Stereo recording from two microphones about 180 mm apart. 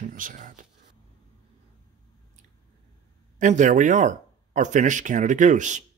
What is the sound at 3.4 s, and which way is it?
Speech, 45° right (ahead or behind).